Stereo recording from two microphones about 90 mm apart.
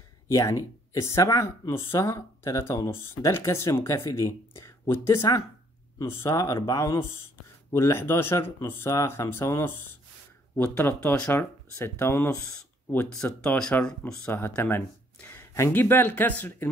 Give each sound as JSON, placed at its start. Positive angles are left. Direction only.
{"t": 0.3, "sound": "speech", "side_deg": 40}
{"t": 13.1, "sound": "speech", "side_deg": 10}
{"t": 14.3, "sound": "speech", "side_deg": 25}